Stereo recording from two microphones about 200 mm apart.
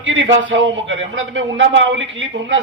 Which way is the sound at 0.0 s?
75° right (ahead or behind).